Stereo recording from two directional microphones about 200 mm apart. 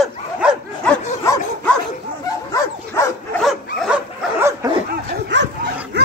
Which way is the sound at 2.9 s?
15° left (ahead or behind).